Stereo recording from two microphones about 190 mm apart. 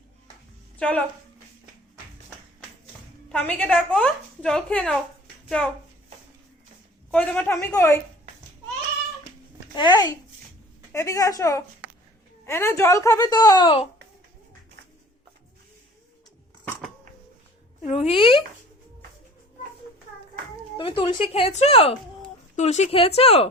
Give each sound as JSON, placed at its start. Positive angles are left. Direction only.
{"t": 0.8, "sound": "speech", "side_deg": 5}
{"t": 3.2, "sound": "a woman's voice", "side_deg": 5}
{"t": 7.1, "sound": "speech", "side_deg": 5}
{"t": 9.7, "sound": "a woman's voice", "side_deg": 25}
{"t": 17.8, "sound": "a woman's voice", "side_deg": 35}
{"t": 20.7, "sound": "a woman's voice", "side_deg": 25}